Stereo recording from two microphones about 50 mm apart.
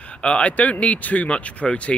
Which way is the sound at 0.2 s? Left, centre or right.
Left.